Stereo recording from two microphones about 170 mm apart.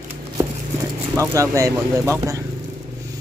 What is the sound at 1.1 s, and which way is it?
Speech, 20° right (ahead or behind).